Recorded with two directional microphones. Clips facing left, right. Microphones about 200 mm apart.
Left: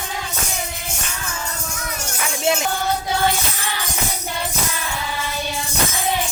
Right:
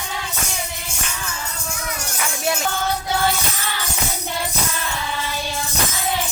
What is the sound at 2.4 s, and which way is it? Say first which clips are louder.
Music: left 3 dB; 20° left (ahead or behind).